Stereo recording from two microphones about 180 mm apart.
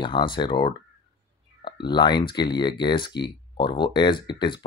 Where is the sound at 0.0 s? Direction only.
25° left (ahead or behind).